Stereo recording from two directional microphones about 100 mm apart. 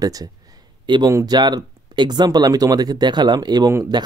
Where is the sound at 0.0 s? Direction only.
40° right (ahead or behind).